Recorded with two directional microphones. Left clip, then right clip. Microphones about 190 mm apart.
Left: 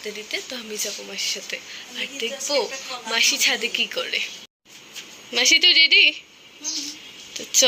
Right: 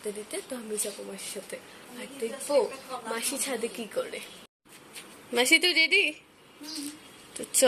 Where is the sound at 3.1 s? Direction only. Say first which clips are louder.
Left 16 dB; 5° right (ahead or behind).